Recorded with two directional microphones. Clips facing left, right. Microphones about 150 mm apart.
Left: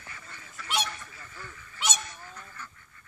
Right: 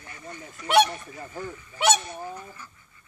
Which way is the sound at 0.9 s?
35° right (ahead or behind).